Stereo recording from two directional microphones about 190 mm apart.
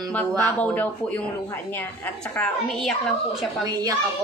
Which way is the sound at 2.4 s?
5° left (ahead or behind).